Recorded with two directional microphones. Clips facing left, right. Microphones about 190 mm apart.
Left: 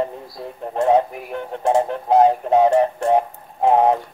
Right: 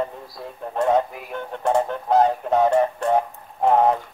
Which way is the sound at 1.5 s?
25° left (ahead or behind).